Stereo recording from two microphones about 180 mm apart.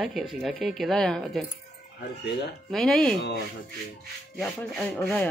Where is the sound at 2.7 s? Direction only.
Centre (ahead or behind).